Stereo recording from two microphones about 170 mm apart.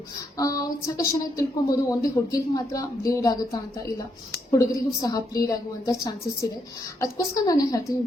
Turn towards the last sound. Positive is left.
turn(degrees=20)  # may be behind; listen again after turning